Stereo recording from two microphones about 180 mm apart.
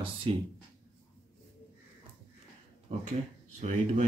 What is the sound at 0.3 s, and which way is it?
Speech, 30° right (ahead or behind).